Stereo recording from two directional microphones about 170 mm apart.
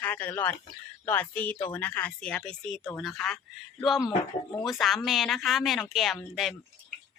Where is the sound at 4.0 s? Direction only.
20° left (ahead or behind).